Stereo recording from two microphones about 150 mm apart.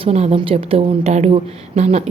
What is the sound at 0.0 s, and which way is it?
A woman's voice, 40° right (ahead or behind).